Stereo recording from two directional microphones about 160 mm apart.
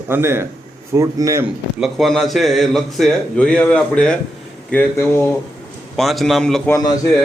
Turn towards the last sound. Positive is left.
turn(degrees=25)  # may be behind; listen again after turning